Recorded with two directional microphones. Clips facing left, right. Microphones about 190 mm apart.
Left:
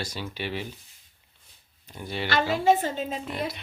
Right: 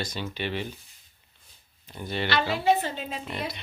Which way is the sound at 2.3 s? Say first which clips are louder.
Left 2 dB; 45° left (ahead or behind).